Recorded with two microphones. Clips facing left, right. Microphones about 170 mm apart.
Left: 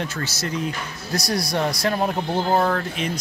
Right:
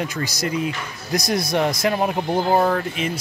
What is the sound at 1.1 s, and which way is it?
Speech, 20° right (ahead or behind).